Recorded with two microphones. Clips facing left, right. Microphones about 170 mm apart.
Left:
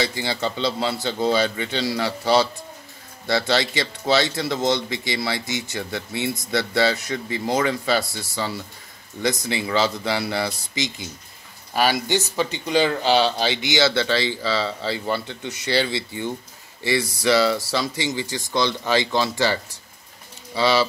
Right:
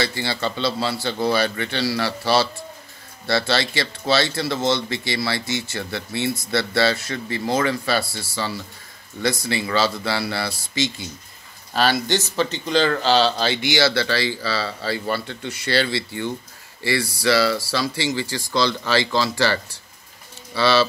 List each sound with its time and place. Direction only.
0.0 s speech: 15° left (ahead or behind)